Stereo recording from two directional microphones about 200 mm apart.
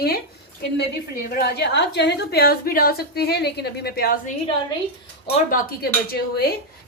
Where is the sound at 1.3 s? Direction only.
50° left (ahead or behind).